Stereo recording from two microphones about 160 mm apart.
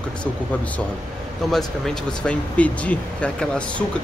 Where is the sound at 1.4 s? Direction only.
Centre (ahead or behind).